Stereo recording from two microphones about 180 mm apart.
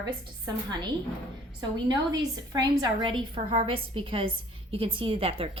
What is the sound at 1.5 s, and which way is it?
A woman's voice, 25° right (ahead or behind).